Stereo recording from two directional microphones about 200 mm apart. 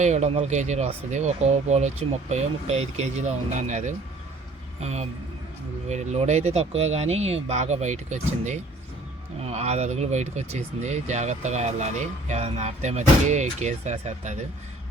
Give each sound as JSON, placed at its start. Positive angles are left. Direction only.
{"t": 0.0, "sound": "speech", "side_deg": -35}